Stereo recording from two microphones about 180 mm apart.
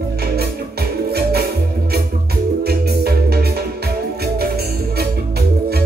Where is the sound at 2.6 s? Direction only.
60° right (ahead or behind).